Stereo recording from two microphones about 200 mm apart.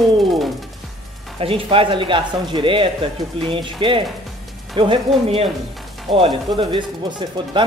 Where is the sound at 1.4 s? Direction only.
25° right (ahead or behind).